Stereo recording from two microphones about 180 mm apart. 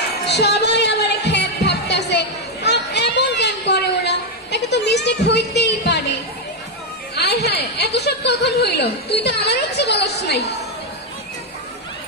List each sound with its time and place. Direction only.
0.2 s music: 65° left (ahead or behind)
7.2 s a woman's voice: 65° left (ahead or behind)